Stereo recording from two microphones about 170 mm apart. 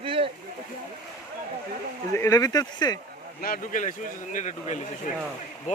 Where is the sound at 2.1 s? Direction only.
20° left (ahead or behind).